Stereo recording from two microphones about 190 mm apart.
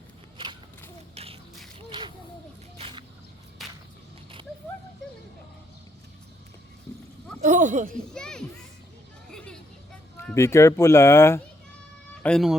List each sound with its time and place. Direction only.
1.1 s a sound: 30° right (ahead or behind)
7.4 s speech: 40° right (ahead or behind)
8.1 s children playing: 5° left (ahead or behind)
9.3 s vehicle: 5° left (ahead or behind)
10.2 s speech: 15° left (ahead or behind)
12.2 s speech: centre (ahead or behind)